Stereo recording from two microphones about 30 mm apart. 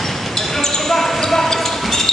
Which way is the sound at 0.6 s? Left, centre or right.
Centre.